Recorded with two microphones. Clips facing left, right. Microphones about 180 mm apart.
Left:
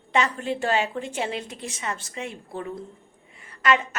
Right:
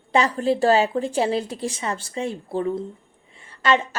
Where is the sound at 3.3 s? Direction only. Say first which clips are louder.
Right 2 dB; 30° right (ahead or behind).